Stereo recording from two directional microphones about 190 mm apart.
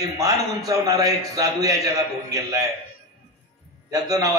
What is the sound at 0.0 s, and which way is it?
A man's voice, 20° right (ahead or behind).